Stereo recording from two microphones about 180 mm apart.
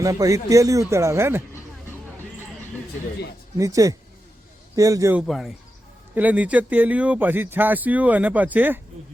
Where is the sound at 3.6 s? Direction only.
20° right (ahead or behind).